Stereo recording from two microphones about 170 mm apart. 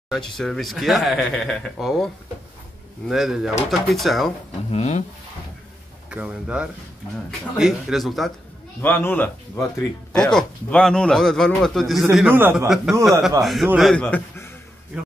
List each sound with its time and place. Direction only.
0.1 s a man's voice: centre (ahead or behind)
3.1 s a man's voice: centre (ahead or behind)
4.6 s speech: 40° left (ahead or behind)
6.0 s a man's voice: 10° right (ahead or behind)
8.8 s a man's voice: 10° left (ahead or behind)
14.9 s speech: 5° right (ahead or behind)